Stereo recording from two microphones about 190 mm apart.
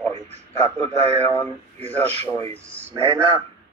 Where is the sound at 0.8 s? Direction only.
35° right (ahead or behind).